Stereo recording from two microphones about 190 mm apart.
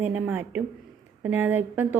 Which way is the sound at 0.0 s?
10° right (ahead or behind).